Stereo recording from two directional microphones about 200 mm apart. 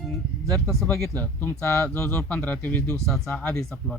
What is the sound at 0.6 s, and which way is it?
Speech, 10° left (ahead or behind).